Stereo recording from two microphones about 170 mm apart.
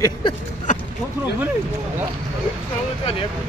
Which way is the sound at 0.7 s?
45° left (ahead or behind).